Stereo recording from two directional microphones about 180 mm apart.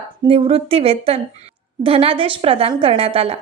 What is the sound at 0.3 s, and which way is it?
A woman's voice, 30° right (ahead or behind).